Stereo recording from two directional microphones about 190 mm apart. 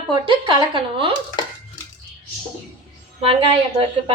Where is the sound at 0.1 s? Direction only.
25° right (ahead or behind).